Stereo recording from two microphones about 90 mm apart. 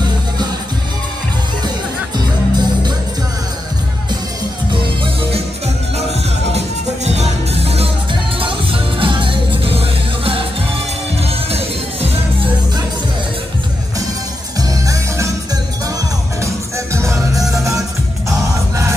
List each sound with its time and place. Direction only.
2.1 s music: 55° right (ahead or behind)
4.7 s music: 70° right (ahead or behind)
7.5 s music: 90° right
14.6 s music: 40° right (ahead or behind)
16.3 s music: 35° right (ahead or behind)